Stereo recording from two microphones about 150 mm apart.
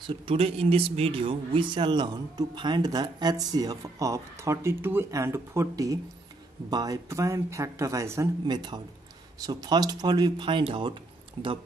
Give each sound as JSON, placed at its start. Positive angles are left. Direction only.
{"t": 0.0, "sound": "speech", "side_deg": -35}